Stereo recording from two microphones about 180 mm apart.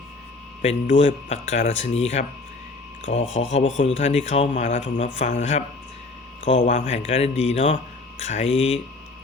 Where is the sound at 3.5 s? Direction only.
35° left (ahead or behind).